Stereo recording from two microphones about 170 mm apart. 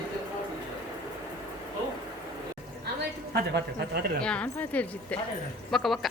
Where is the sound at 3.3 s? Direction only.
75° right (ahead or behind).